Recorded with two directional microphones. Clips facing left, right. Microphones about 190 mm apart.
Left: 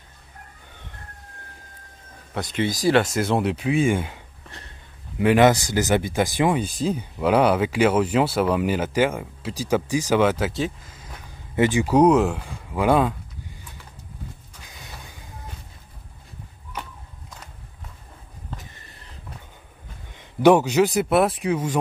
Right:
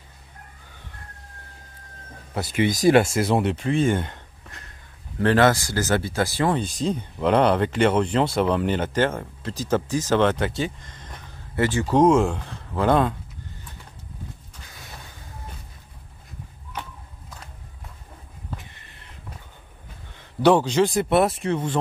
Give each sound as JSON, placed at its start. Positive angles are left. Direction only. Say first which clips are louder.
{"t": 2.3, "sound": "speech", "louder": "right 1 dB", "side_deg": -5}
{"t": 2.6, "sound": "speech", "louder": "right 3 dB", "side_deg": -20}
{"t": 3.0, "sound": "speech", "louder": "right 1 dB", "side_deg": -5}
{"t": 5.2, "sound": "speech", "louder": "left 2 dB", "side_deg": 15}
{"t": 20.2, "sound": "speech", "louder": "left 2 dB", "side_deg": 10}